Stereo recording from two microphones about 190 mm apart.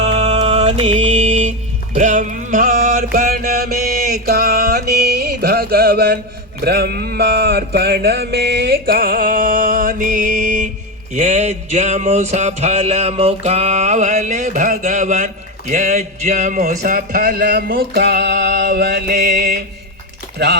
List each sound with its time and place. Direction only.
0.0 s music: 35° right (ahead or behind); by 6.1 s 55° right (ahead or behind)
6.7 s mantra: 55° right (ahead or behind)
11.1 s a sound: 35° right (ahead or behind); by 19.5 s 55° right (ahead or behind)
20.4 s speech: 60° right (ahead or behind)